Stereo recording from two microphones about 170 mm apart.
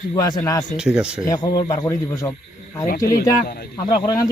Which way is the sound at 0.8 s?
5° right (ahead or behind).